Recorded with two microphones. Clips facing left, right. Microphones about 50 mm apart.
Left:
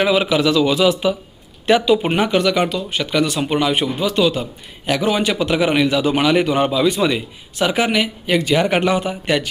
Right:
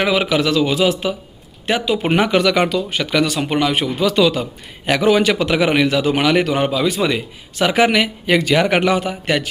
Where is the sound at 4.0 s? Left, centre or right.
Right.